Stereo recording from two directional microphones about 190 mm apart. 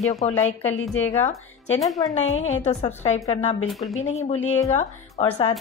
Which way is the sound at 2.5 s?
35° left (ahead or behind).